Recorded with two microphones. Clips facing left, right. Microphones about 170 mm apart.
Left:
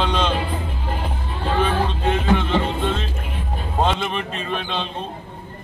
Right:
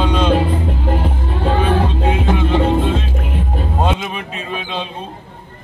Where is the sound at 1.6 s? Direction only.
10° right (ahead or behind).